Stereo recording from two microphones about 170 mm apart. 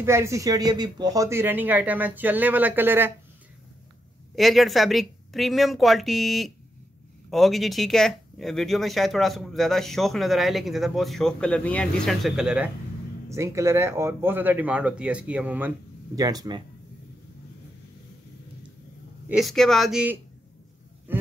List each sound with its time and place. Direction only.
0.0 s speech: 15° right (ahead or behind)
4.4 s speech: centre (ahead or behind)
13.3 s speech: 15° right (ahead or behind)
16.2 s speech: 20° right (ahead or behind)
19.2 s speech: centre (ahead or behind)
21.1 s a sound: 10° right (ahead or behind)